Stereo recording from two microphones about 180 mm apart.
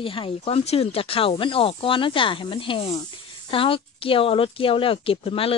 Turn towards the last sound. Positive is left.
turn(degrees=30)  # may be behind; listen again after turning